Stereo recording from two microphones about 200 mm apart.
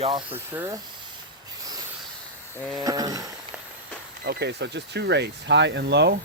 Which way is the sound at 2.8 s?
20° right (ahead or behind).